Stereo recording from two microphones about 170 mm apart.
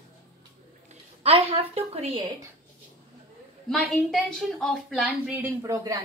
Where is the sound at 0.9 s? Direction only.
35° right (ahead or behind).